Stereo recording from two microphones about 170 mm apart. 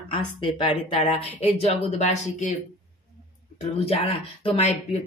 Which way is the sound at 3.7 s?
35° left (ahead or behind).